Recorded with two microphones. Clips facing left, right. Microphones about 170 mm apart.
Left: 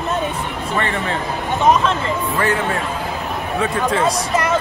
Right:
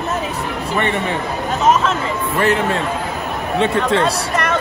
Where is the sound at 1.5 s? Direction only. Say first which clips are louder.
Even; centre (ahead or behind).